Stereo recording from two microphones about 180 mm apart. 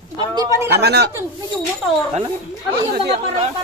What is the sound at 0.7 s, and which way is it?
Speech, 65° right (ahead or behind).